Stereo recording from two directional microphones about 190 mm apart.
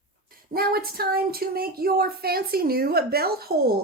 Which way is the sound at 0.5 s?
50° right (ahead or behind).